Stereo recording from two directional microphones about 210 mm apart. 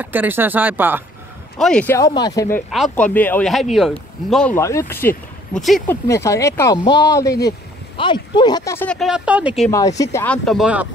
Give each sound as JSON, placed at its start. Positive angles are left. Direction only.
{"t": 0.0, "sound": "speech", "side_deg": -10}
{"t": 1.6, "sound": "speech", "side_deg": 5}
{"t": 2.7, "sound": "speech", "side_deg": 5}
{"t": 6.0, "sound": "speech", "side_deg": 15}
{"t": 9.7, "sound": "speech", "side_deg": 15}